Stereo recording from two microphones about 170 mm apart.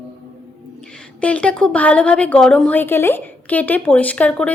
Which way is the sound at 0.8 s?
5° left (ahead or behind).